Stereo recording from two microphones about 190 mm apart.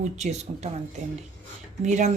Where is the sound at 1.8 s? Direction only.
40° right (ahead or behind).